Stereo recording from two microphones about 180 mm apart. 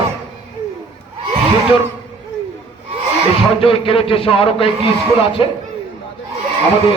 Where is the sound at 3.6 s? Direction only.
30° left (ahead or behind).